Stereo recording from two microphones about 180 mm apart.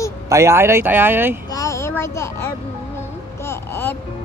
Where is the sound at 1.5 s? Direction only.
20° left (ahead or behind).